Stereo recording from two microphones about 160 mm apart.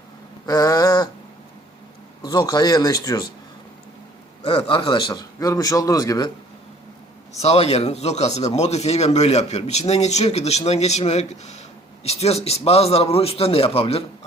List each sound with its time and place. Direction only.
0.4 s a sound: 25° left (ahead or behind)
2.2 s a man's voice: 25° left (ahead or behind)
4.4 s a man's voice: 35° left (ahead or behind)
7.3 s a man's voice: 40° left (ahead or behind)